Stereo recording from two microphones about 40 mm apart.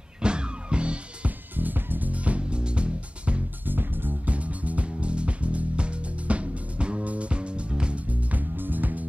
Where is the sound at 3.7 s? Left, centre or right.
Right.